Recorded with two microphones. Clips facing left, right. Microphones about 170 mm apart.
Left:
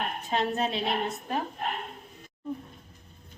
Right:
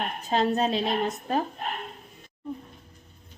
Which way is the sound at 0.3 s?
35° right (ahead or behind).